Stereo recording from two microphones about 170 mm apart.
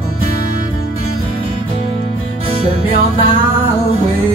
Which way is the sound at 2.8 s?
30° left (ahead or behind).